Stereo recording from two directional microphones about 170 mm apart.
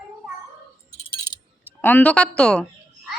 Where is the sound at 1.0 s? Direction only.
30° left (ahead or behind).